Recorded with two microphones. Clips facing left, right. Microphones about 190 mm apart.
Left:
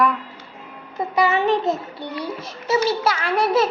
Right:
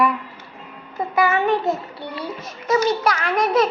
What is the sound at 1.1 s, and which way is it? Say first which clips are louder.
A child's voice: even; 15° left (ahead or behind).